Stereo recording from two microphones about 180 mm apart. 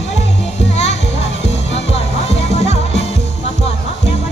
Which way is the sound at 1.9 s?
35° left (ahead or behind).